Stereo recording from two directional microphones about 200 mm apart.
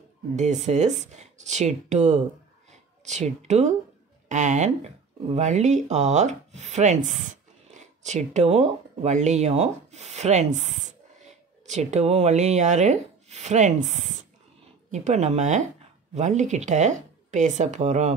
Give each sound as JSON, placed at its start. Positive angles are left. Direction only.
{"t": 0.4, "sound": "speech", "side_deg": -35}